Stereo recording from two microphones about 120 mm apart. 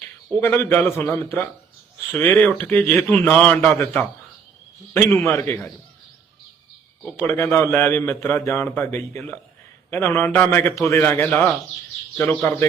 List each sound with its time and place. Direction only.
0.3 s a man's voice: 20° left (ahead or behind)
5.2 s a man's voice: 20° left (ahead or behind)
7.3 s a man's voice: 20° left (ahead or behind)